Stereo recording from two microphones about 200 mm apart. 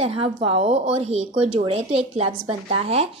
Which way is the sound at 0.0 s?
30° right (ahead or behind).